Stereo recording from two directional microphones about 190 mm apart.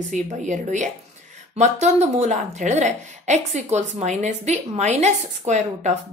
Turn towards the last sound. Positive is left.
turn(degrees=-40)  # may be behind; listen again after turning